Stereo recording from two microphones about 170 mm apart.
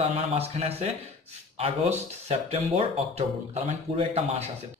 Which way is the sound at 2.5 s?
35° right (ahead or behind).